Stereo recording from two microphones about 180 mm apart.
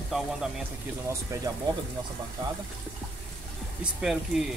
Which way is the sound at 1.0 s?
15° right (ahead or behind).